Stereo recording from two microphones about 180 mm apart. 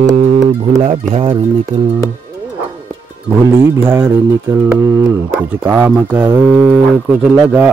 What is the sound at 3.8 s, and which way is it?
Speech, 15° right (ahead or behind).